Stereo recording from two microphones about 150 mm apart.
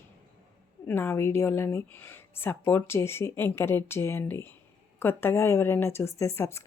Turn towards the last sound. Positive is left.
turn(degrees=20)  # may be behind; listen again after turning